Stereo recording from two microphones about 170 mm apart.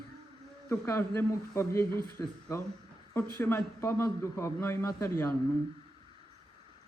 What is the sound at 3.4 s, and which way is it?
A man's voice, 15° left (ahead or behind).